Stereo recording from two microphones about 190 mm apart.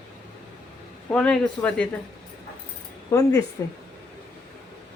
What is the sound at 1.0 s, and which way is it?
Speech, 5° left (ahead or behind).